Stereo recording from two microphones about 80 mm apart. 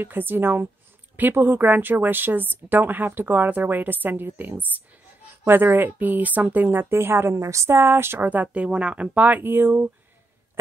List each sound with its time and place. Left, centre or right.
0.0 s speech: right